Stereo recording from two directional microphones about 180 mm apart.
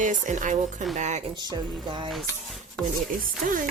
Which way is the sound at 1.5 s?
25° right (ahead or behind).